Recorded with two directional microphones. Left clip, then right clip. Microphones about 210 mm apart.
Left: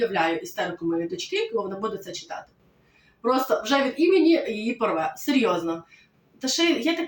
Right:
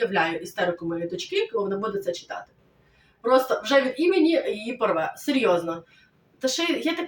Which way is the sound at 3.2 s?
10° right (ahead or behind).